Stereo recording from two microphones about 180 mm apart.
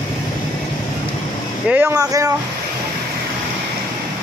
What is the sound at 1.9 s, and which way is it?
Speech, 20° right (ahead or behind).